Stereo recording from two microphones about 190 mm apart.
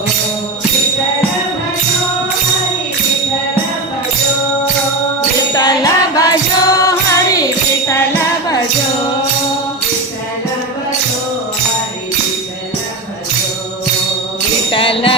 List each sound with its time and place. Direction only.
5.5 s music: 20° left (ahead or behind)
14.7 s music: 30° left (ahead or behind)